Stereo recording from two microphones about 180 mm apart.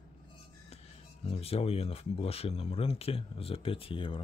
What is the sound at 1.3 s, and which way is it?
Speech, 35° left (ahead or behind).